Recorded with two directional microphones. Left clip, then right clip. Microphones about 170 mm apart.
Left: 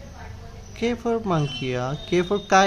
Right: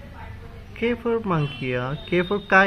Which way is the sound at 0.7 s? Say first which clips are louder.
Right 1 dB; 20° left (ahead or behind).